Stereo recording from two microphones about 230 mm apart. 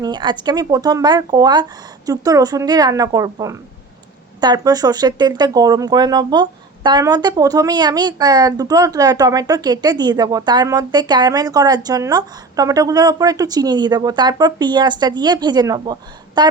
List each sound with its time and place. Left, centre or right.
0.0 s speech: centre